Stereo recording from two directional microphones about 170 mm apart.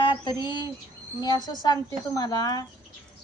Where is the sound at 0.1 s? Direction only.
25° left (ahead or behind).